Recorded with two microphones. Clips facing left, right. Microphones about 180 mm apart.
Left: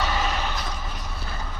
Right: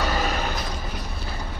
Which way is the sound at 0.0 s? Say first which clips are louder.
Right 1 dB; 40° right (ahead or behind).